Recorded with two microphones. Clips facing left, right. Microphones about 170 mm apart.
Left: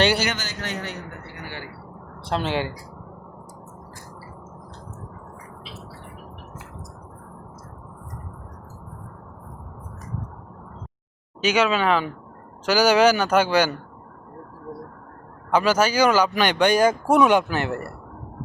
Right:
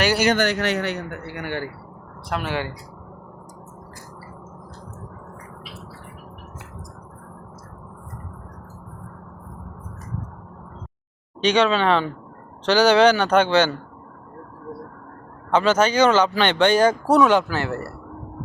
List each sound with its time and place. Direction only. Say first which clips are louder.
0.3 s a man's voice: right 10 dB; 65° right (ahead or behind)
1.4 s speech: right 9 dB; 60° right (ahead or behind)
2.3 s speech: left 2 dB; 25° left (ahead or behind)
11.3 s speech: right 2 dB; 5° left (ahead or behind)
15.4 s speech: right 1 dB; 10° left (ahead or behind)